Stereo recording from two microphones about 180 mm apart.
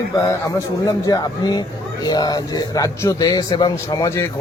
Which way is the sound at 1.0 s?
20° left (ahead or behind).